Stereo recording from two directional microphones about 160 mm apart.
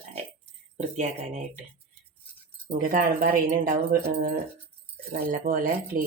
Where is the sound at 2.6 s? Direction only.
60° right (ahead or behind).